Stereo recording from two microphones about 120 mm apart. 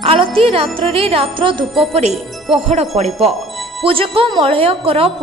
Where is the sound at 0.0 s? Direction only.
50° right (ahead or behind).